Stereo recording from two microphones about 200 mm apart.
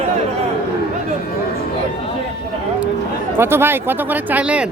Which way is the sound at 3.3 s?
10° right (ahead or behind).